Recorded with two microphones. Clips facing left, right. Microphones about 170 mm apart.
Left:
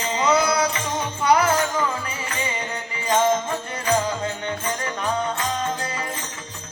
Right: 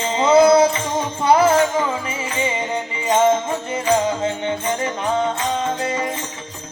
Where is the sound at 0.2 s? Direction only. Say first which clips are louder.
Right 9 dB; 25° right (ahead or behind).